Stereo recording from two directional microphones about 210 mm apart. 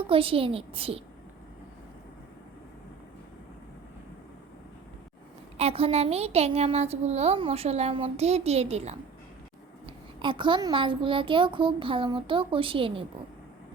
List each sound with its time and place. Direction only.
0.1 s a child's voice: 25° right (ahead or behind)
5.5 s a child's voice: 30° right (ahead or behind)